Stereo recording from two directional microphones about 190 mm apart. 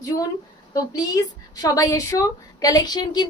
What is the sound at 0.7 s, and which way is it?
A woman's voice, 20° left (ahead or behind).